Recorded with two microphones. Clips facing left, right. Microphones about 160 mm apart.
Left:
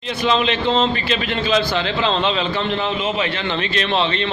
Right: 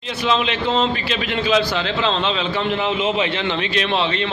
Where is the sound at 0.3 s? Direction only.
5° right (ahead or behind).